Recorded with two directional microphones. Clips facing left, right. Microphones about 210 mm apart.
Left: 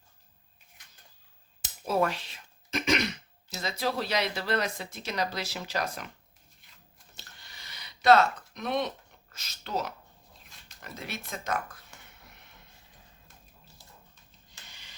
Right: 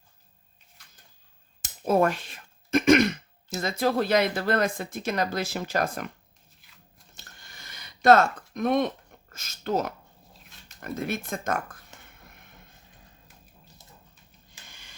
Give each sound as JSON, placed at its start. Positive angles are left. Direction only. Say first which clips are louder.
{"t": 1.6, "sound": "speech", "louder": "right 5 dB", "side_deg": -50}
{"t": 7.2, "sound": "a sound", "louder": "right 2 dB", "side_deg": -50}
{"t": 9.3, "sound": "speech", "louder": "right 7 dB", "side_deg": -50}
{"t": 14.7, "sound": "printer", "louder": "right 2 dB", "side_deg": -50}